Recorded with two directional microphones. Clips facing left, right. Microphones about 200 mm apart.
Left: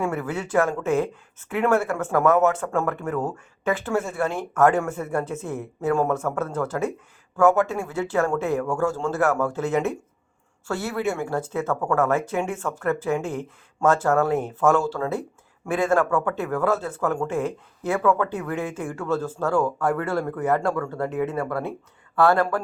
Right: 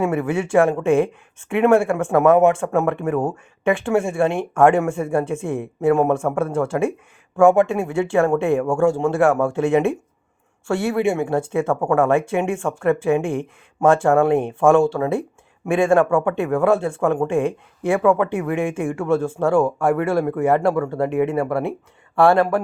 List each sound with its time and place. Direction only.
0.0 s speech: 25° right (ahead or behind)